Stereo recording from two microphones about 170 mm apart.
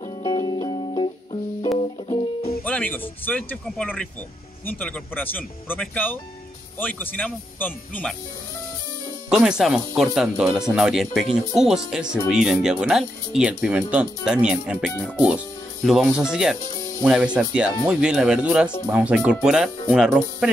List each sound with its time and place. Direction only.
0.2 s music: 25° left (ahead or behind)
2.6 s music: 10° left (ahead or behind)
3.3 s speech: 10° left (ahead or behind)
9.3 s speech: 5° right (ahead or behind)